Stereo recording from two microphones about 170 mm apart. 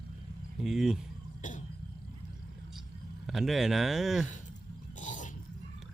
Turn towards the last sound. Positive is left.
turn(degrees=50)  # may be behind; listen again after turning